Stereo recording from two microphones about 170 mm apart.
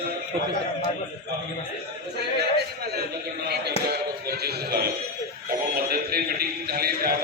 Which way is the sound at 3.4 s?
70° right (ahead or behind).